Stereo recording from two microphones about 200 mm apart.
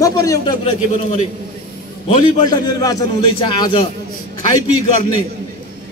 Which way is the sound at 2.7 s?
20° left (ahead or behind).